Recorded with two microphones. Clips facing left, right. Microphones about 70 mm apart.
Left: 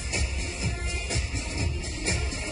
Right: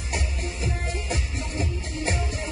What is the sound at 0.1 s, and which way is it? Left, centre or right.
Music, right.